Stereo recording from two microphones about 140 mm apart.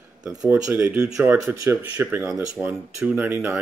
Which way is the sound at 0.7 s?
15° right (ahead or behind).